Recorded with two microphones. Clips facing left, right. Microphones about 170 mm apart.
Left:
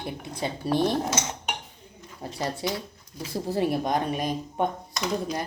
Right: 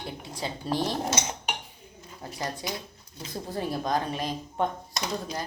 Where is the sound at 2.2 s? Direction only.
25° left (ahead or behind).